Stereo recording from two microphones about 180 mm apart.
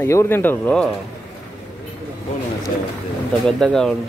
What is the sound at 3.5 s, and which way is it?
Speech, 5° left (ahead or behind).